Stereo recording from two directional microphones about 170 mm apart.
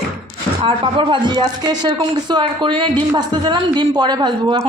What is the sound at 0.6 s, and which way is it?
A woman's voice, 30° right (ahead or behind).